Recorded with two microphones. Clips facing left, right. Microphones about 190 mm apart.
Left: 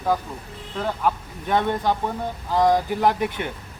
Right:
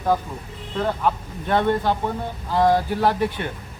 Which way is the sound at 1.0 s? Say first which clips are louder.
Right 1 dB; 10° left (ahead or behind).